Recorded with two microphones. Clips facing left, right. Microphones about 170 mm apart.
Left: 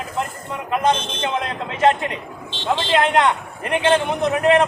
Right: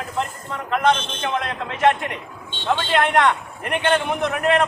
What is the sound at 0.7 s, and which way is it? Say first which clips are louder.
A man's voice: even; 20° left (ahead or behind).